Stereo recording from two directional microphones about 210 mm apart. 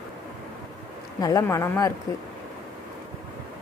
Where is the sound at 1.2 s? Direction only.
15° left (ahead or behind).